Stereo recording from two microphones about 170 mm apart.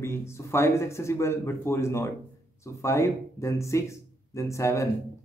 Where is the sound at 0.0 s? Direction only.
15° left (ahead or behind).